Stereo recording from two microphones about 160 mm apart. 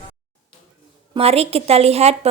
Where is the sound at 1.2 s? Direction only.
40° right (ahead or behind).